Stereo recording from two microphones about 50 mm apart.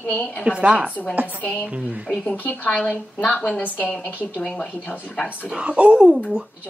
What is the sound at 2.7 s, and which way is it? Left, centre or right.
Speech, left.